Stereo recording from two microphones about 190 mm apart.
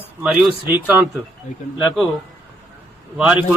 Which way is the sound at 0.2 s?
5° right (ahead or behind).